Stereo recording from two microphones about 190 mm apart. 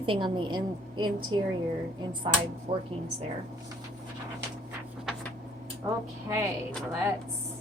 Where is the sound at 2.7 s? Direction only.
30° right (ahead or behind).